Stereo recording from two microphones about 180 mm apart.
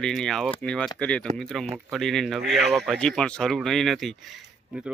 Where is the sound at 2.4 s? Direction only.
65° right (ahead or behind).